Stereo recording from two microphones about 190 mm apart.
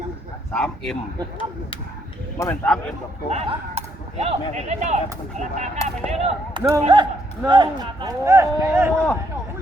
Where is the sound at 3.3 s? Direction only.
35° right (ahead or behind); by 8.9 s 15° right (ahead or behind).